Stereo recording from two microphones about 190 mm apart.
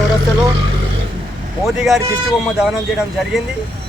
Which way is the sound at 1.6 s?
Centre (ahead or behind).